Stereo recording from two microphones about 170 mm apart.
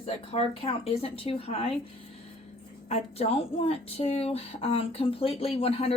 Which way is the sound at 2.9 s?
35° left (ahead or behind).